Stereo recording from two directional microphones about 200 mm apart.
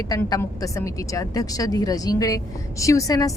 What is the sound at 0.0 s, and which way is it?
A woman's voice, 20° left (ahead or behind).